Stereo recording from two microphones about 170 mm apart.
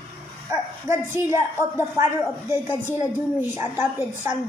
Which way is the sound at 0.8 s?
15° right (ahead or behind).